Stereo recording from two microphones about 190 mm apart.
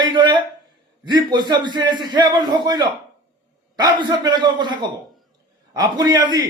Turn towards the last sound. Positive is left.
turn(degrees=-20)  # may be behind; listen again after turning